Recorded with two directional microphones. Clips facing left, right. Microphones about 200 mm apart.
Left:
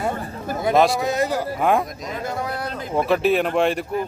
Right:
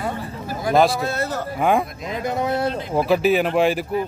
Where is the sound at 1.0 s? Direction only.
15° left (ahead or behind).